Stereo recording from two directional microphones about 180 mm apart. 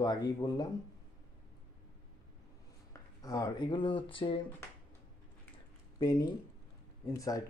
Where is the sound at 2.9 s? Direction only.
20° left (ahead or behind).